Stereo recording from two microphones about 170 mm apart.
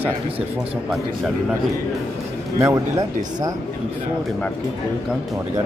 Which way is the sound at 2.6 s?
20° right (ahead or behind).